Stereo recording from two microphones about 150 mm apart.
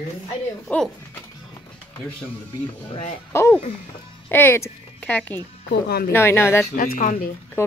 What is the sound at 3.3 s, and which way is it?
Speech, 15° left (ahead or behind).